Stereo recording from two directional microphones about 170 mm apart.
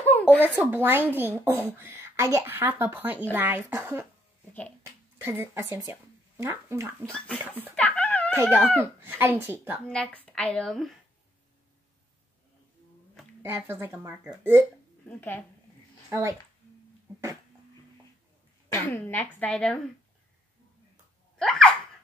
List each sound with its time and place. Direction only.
0.0 s a sound: 10° left (ahead or behind)
0.4 s speech: 10° right (ahead or behind)
5.2 s speech: 15° right (ahead or behind)
7.0 s speech: 5° left (ahead or behind)
7.7 s dog: 5° left (ahead or behind)
8.4 s speech: 10° right (ahead or behind)
9.8 s speech: 5° left (ahead or behind)
13.4 s speech: 15° right (ahead or behind)
15.0 s speech: 10° left (ahead or behind)
16.1 s speech: 15° right (ahead or behind)
18.7 s speech: 15° left (ahead or behind)
21.4 s a sound: 5° left (ahead or behind)